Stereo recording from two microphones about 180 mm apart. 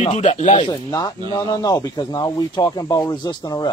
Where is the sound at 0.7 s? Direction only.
20° left (ahead or behind).